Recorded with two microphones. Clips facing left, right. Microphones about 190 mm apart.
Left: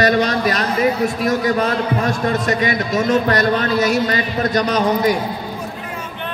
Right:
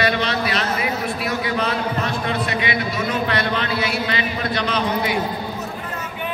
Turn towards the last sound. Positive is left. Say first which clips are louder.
# left 6 dB
turn(degrees=45)  # may be behind; listen again after turning